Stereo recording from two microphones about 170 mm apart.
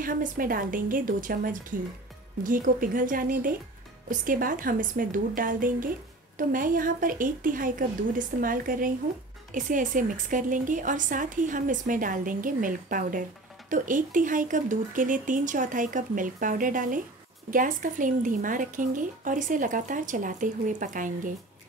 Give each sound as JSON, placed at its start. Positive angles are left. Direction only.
{"t": 0.0, "sound": "a woman's voice", "side_deg": -55}